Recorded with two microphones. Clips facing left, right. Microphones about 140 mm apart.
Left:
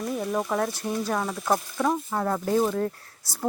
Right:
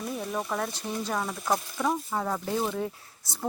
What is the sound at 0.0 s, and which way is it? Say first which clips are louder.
Speech: left 5 dB; 5° left (ahead or behind).